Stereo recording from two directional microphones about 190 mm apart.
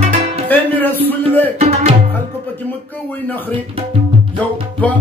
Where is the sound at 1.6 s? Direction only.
35° right (ahead or behind).